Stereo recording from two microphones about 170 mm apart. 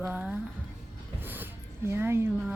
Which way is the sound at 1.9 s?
15° right (ahead or behind).